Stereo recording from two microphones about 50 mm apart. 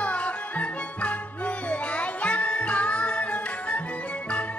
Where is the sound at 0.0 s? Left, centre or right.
Left.